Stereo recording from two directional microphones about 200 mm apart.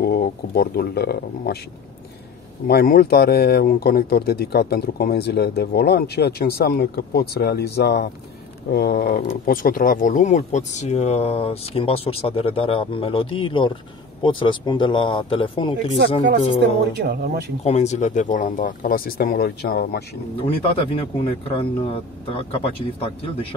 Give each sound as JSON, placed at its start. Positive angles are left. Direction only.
{"t": 0.0, "sound": "speech", "side_deg": 50}
{"t": 2.6, "sound": "a man's voice", "side_deg": 45}
{"t": 16.9, "sound": "speech", "side_deg": -55}
{"t": 17.6, "sound": "speech", "side_deg": 35}
{"t": 20.3, "sound": "a man's voice", "side_deg": 25}